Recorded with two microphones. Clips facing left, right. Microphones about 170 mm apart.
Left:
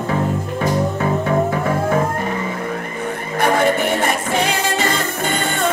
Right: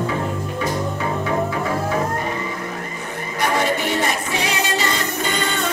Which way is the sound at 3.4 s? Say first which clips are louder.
Left 4 dB; 55° left (ahead or behind).